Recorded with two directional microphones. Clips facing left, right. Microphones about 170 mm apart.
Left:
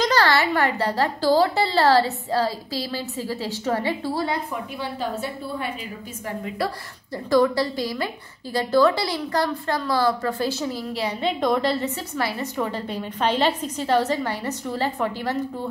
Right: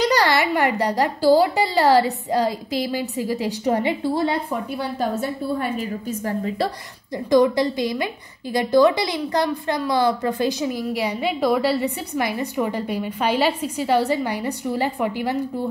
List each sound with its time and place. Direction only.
0.0 s a woman's voice: 15° right (ahead or behind)
7.2 s a woman's voice: 20° right (ahead or behind)